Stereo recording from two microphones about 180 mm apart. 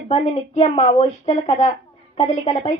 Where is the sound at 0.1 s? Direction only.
35° left (ahead or behind).